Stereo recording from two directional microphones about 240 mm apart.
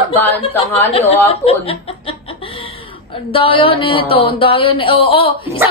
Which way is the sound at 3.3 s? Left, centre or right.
Left.